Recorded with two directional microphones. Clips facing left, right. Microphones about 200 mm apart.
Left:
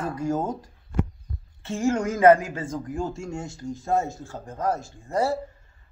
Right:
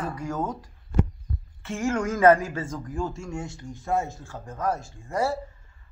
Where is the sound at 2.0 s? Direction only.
30° left (ahead or behind).